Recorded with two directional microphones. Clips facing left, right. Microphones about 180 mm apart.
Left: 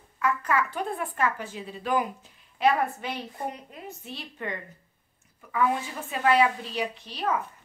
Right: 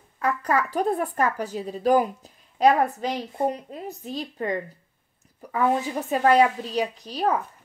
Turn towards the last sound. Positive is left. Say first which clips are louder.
# right 5 dB
turn(degrees=-40)  # may be behind; listen again after turning